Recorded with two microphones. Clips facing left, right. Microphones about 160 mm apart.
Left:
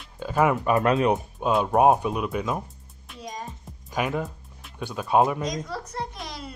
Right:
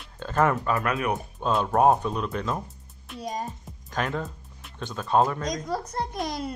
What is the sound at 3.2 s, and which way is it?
Music, 40° right (ahead or behind).